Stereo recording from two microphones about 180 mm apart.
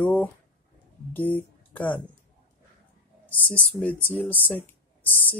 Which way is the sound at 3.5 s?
10° left (ahead or behind).